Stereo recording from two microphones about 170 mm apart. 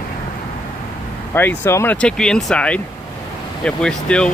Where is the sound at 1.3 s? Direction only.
15° left (ahead or behind).